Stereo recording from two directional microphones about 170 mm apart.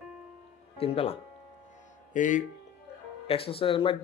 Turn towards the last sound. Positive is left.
turn(degrees=30)  # may be behind; listen again after turning